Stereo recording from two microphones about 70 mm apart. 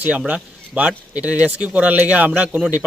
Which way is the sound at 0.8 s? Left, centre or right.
Centre.